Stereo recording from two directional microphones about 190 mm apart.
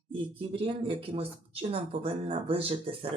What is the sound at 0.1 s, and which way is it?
Speech, 30° right (ahead or behind).